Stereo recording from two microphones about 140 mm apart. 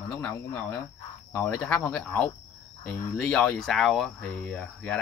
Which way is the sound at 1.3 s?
15° left (ahead or behind).